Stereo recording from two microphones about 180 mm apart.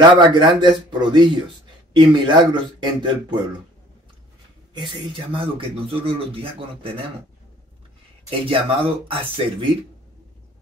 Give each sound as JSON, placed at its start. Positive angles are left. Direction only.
{"t": 0.1, "sound": "speech", "side_deg": -25}
{"t": 4.7, "sound": "speech", "side_deg": -25}
{"t": 8.3, "sound": "speech", "side_deg": -30}